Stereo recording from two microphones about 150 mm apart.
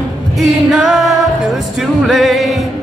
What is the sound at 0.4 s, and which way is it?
Music, 5° right (ahead or behind).